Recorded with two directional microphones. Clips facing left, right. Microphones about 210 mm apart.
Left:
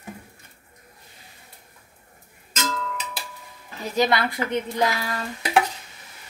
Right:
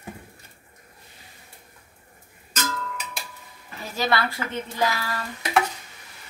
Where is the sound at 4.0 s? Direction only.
20° left (ahead or behind).